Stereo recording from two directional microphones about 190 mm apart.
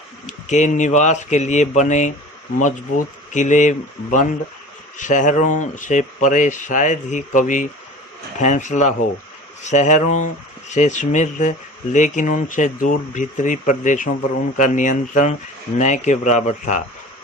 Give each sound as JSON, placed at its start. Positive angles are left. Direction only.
{"t": 0.3, "sound": "speech", "side_deg": 40}